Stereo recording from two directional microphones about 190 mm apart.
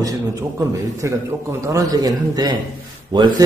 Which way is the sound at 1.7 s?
20° right (ahead or behind).